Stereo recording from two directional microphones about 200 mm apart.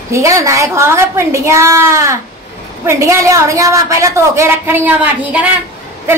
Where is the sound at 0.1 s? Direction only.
15° right (ahead or behind).